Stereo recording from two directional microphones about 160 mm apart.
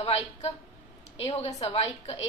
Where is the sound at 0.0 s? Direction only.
40° left (ahead or behind).